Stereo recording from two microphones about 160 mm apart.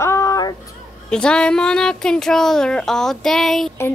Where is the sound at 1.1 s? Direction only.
5° left (ahead or behind).